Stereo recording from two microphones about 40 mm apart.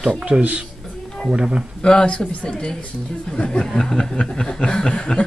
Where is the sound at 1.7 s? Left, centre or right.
Left.